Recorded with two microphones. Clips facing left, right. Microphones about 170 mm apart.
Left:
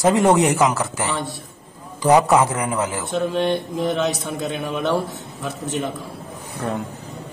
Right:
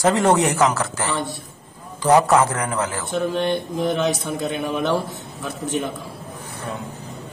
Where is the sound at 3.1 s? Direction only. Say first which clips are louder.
Left 1 dB; centre (ahead or behind).